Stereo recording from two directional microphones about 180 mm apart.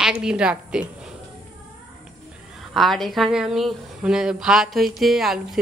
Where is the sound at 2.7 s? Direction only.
Centre (ahead or behind).